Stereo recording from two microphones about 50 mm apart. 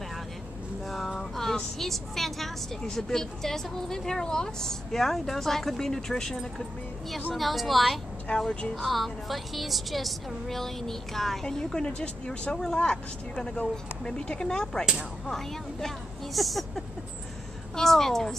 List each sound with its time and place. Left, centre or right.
0.8 s vehicle: centre
2.8 s a woman's voice: centre
8.4 s speech: centre
8.7 s a woman's voice: centre